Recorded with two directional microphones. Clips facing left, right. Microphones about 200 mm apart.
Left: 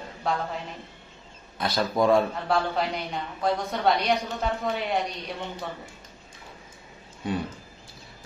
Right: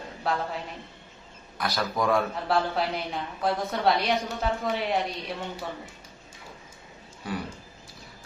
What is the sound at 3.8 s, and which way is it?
A man's voice, centre (ahead or behind).